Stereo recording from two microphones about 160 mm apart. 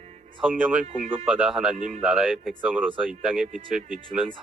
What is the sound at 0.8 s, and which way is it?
Speech, 40° right (ahead or behind).